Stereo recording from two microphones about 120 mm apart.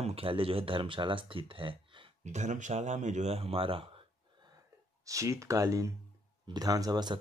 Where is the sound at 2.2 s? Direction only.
80° right; by 3.9 s 50° right (ahead or behind).